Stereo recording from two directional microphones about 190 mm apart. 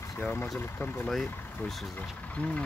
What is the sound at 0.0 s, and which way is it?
Speech, 15° left (ahead or behind).